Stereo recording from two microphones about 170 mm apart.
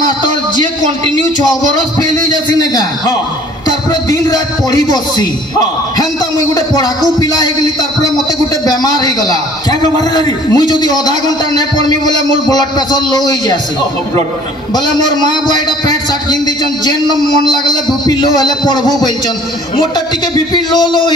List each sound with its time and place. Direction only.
2.0 s a man's voice: 20° left (ahead or behind)
14.7 s a man's voice: 25° left (ahead or behind)
20.5 s a man's voice: 25° left (ahead or behind)